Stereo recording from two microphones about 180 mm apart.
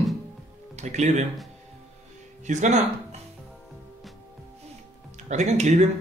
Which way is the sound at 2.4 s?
40° right (ahead or behind).